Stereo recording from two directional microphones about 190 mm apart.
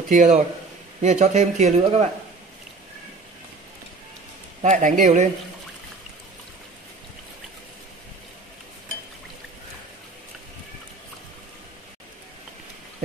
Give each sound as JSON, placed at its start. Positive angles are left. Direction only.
{"t": 0.1, "sound": "speech", "side_deg": -40}
{"t": 4.6, "sound": "speech", "side_deg": -40}